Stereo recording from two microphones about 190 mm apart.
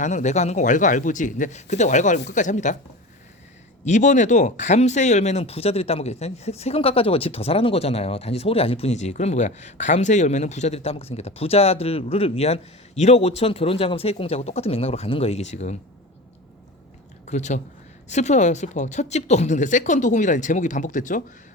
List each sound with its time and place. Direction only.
0.0 s speech: 40° left (ahead or behind)
3.8 s speech: 40° left (ahead or behind)
17.2 s speech: 40° left (ahead or behind)